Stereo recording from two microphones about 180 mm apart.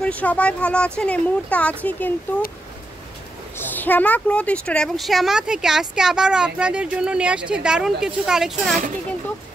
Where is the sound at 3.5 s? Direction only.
10° left (ahead or behind).